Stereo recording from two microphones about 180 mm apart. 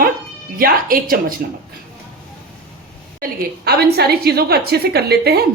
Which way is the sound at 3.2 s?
60° right (ahead or behind).